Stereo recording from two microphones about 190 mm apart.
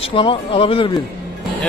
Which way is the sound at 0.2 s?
30° left (ahead or behind).